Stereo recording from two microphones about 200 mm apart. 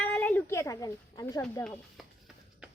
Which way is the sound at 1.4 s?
5° left (ahead or behind).